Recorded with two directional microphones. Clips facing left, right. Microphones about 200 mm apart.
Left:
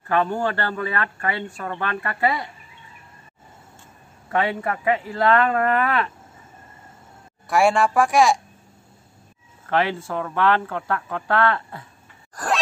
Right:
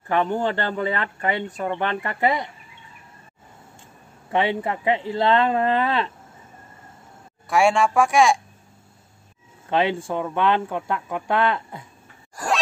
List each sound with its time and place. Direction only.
0.1 s speech: 20° right (ahead or behind)
4.3 s speech: 20° right (ahead or behind)
7.4 s a woman's voice: centre (ahead or behind)
9.7 s speech: 20° right (ahead or behind)
12.4 s a sound: 10° right (ahead or behind)